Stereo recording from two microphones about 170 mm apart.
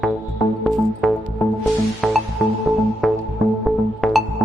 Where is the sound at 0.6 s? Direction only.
Centre (ahead or behind).